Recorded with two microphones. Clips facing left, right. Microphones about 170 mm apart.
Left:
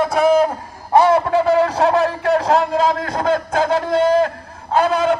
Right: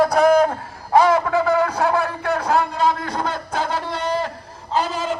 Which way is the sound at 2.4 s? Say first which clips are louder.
Left 3 dB; 90° left.